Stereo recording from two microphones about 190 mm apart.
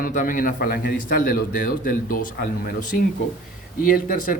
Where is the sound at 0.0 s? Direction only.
45° left (ahead or behind).